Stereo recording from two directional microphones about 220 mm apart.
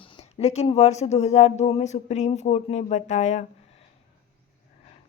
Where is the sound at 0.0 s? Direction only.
30° left (ahead or behind).